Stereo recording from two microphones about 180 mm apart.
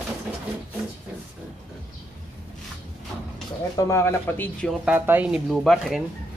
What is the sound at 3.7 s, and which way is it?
Speech, 15° left (ahead or behind).